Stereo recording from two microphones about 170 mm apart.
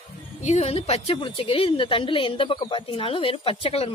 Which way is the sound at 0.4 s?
40° left (ahead or behind).